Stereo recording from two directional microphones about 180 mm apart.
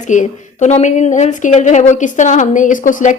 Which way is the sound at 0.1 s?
40° left (ahead or behind).